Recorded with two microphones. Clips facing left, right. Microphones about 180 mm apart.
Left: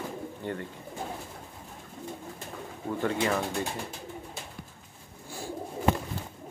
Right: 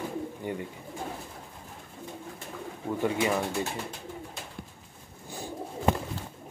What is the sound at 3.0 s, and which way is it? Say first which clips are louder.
Speech: right 1 dB; 15° right (ahead or behind).